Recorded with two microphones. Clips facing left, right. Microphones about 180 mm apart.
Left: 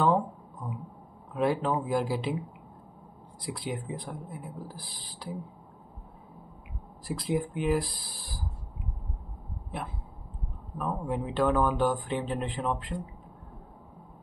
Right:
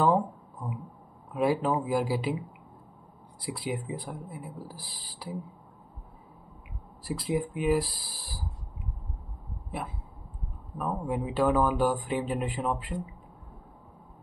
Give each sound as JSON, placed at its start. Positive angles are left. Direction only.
{"t": 0.0, "sound": "a sound", "side_deg": -5}
{"t": 1.3, "sound": "speech", "side_deg": -5}
{"t": 7.2, "sound": "speech", "side_deg": 0}
{"t": 9.7, "sound": "speech", "side_deg": -5}